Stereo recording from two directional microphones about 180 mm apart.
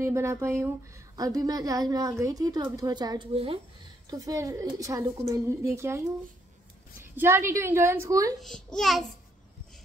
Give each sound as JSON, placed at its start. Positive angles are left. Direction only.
{"t": 0.0, "sound": "a woman's voice", "side_deg": -15}
{"t": 4.1, "sound": "a woman's voice", "side_deg": -20}
{"t": 8.4, "sound": "a child's voice", "side_deg": 5}